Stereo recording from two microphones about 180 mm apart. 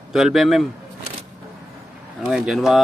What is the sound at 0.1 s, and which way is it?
Speech, centre (ahead or behind).